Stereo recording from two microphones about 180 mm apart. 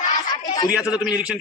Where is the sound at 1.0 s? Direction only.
5° right (ahead or behind).